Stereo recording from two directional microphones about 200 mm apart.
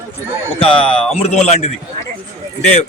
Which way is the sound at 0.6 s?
25° left (ahead or behind).